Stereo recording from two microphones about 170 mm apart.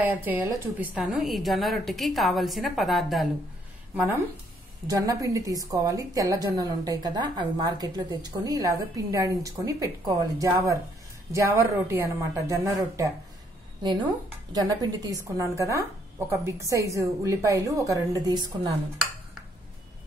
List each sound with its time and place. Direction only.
0.0 s a woman's voice: 10° right (ahead or behind)
3.9 s a woman's voice: 10° right (ahead or behind)
14.5 s a woman's voice: 25° right (ahead or behind)